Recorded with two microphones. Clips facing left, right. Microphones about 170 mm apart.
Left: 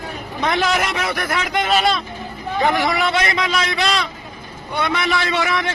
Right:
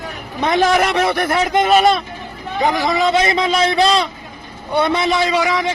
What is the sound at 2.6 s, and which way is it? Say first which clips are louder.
A man's voice: right 2 dB; 20° right (ahead or behind).